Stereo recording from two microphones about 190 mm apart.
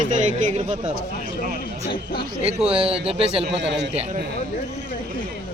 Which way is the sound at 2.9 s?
30° right (ahead or behind).